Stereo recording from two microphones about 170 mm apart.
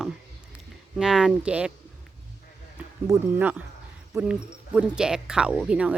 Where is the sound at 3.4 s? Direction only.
10° right (ahead or behind).